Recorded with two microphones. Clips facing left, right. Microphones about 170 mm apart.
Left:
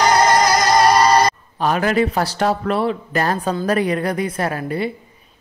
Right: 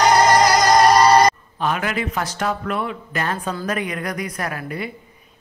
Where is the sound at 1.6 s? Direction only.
35° left (ahead or behind).